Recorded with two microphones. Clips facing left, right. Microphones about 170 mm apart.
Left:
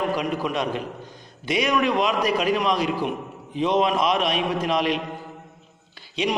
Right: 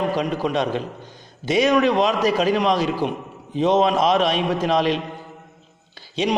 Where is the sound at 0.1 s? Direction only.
25° right (ahead or behind).